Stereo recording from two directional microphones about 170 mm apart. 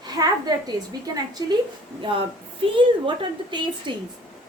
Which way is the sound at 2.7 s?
30° right (ahead or behind).